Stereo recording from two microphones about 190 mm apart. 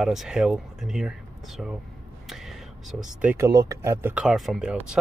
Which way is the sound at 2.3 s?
Centre (ahead or behind).